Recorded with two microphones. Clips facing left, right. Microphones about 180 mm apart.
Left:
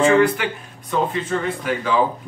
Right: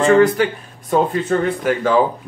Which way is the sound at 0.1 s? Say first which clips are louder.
Right 4 dB; 40° right (ahead or behind).